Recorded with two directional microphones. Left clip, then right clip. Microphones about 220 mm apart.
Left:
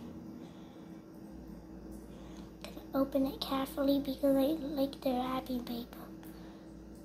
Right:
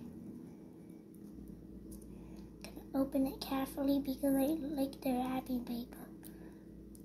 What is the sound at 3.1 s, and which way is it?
A child's voice, 15° right (ahead or behind).